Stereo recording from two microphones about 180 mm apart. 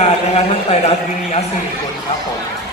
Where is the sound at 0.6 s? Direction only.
35° left (ahead or behind).